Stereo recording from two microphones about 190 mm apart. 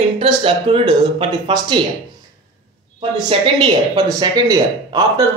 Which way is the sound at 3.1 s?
20° right (ahead or behind).